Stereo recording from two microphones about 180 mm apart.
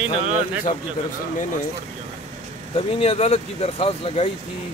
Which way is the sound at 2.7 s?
35° left (ahead or behind).